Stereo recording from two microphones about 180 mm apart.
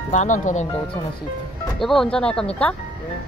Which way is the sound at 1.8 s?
Centre (ahead or behind).